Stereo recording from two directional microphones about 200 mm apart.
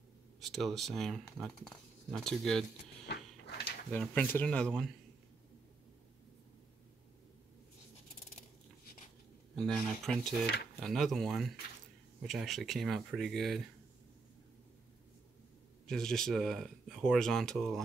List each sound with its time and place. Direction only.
0.4 s speech: centre (ahead or behind)
3.9 s speech: 5° left (ahead or behind)
9.6 s speech: centre (ahead or behind)
15.9 s speech: centre (ahead or behind)